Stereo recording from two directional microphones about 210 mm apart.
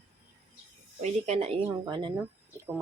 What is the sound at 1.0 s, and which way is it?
Speech, 30° right (ahead or behind).